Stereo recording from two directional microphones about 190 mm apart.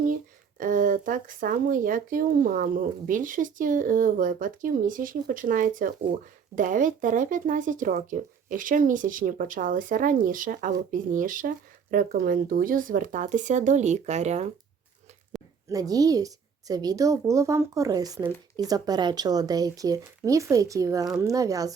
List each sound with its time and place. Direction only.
0.6 s speech: 45° right (ahead or behind)
15.3 s a sound: centre (ahead or behind)
15.7 s a woman's voice: 20° right (ahead or behind)